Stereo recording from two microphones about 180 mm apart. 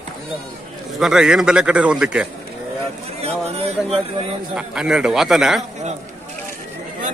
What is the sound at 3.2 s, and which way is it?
Speech, 35° right (ahead or behind).